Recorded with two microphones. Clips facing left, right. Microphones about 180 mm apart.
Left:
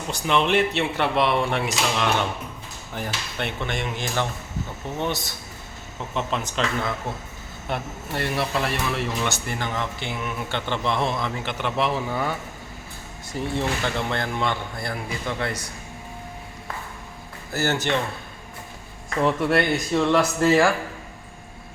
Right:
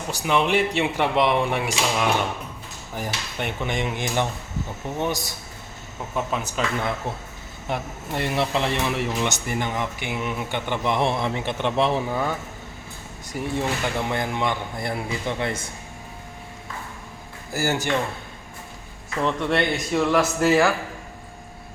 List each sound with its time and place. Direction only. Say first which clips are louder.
0.1 s speech: even; 10° right (ahead or behind)
7.7 s speech: right 1 dB; 15° right (ahead or behind)
13.3 s speech: even; 15° right (ahead or behind)
17.5 s speech: even; 10° right (ahead or behind)
19.2 s speech: left 2 dB; 5° left (ahead or behind)